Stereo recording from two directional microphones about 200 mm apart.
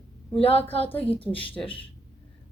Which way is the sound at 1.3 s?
25° left (ahead or behind).